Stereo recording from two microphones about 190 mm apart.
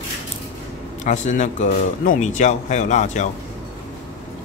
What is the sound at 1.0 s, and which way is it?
Speech, 40° left (ahead or behind).